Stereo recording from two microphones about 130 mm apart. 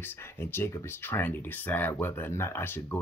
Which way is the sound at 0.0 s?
20° left (ahead or behind).